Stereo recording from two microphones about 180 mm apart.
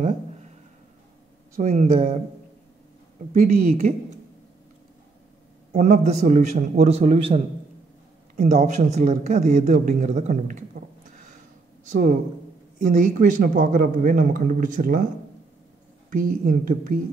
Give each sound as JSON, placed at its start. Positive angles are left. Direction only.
{"t": 1.6, "sound": "speech", "side_deg": -45}
{"t": 3.3, "sound": "speech", "side_deg": -55}
{"t": 5.7, "sound": "a man's voice", "side_deg": -40}
{"t": 11.9, "sound": "speech", "side_deg": -45}
{"t": 16.1, "sound": "speech", "side_deg": -50}